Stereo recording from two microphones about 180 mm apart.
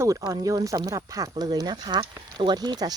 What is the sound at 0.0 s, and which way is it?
Speech, 20° right (ahead or behind).